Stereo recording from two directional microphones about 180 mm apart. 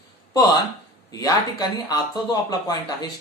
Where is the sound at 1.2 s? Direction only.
20° left (ahead or behind).